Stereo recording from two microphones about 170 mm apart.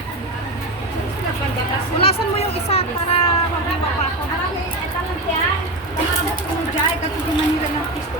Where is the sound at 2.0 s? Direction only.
35° left (ahead or behind).